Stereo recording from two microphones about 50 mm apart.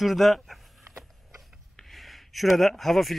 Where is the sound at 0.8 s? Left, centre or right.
Right.